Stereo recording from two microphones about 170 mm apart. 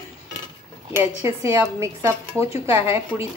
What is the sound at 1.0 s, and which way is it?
A woman's voice, 15° right (ahead or behind).